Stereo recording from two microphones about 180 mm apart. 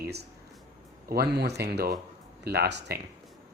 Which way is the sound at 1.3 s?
65° right (ahead or behind).